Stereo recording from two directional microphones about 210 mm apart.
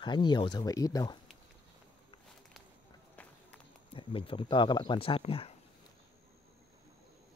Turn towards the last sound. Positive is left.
turn(degrees=25)  # may be behind; listen again after turning